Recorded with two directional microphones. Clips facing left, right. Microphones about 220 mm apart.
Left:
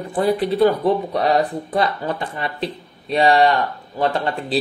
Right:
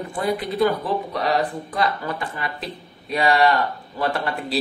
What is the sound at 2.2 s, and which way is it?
Speech, 30° left (ahead or behind).